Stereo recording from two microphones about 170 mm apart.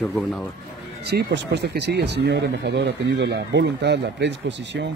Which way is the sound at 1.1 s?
85° right.